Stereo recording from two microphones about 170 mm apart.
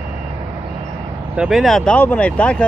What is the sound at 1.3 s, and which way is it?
Speech, 5° right (ahead or behind).